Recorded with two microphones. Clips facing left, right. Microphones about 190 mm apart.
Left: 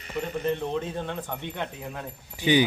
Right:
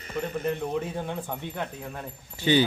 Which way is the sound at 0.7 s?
10° right (ahead or behind).